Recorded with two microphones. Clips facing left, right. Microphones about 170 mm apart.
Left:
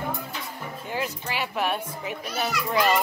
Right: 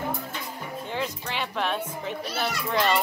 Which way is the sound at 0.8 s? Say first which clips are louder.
Left 2 dB; 5° left (ahead or behind).